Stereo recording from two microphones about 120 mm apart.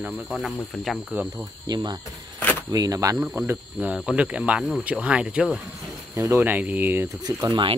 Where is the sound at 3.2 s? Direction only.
15° right (ahead or behind).